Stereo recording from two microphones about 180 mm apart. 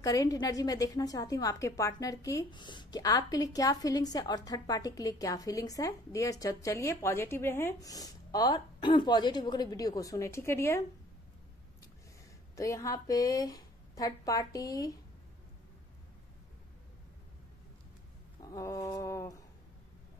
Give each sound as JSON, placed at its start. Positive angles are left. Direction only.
{"t": 0.0, "sound": "a woman's voice", "side_deg": 20}
{"t": 12.5, "sound": "a woman's voice", "side_deg": 15}
{"t": 18.4, "sound": "a woman's voice", "side_deg": 20}